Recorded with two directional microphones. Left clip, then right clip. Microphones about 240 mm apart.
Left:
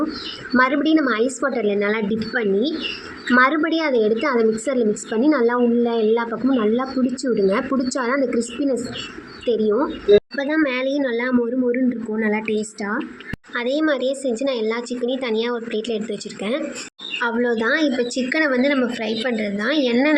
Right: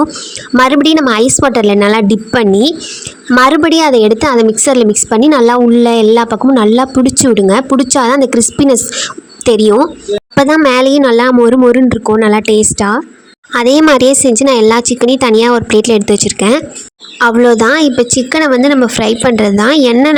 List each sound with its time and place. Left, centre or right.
0.5 s a woman's voice: right